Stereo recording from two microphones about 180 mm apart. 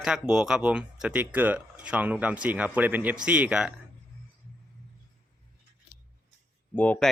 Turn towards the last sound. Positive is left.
turn(degrees=10)  # may be behind; listen again after turning